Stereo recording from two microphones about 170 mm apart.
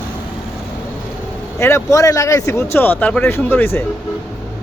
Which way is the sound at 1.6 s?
15° left (ahead or behind).